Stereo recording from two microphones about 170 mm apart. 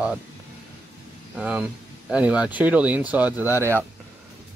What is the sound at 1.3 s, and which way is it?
Speech, 5° right (ahead or behind).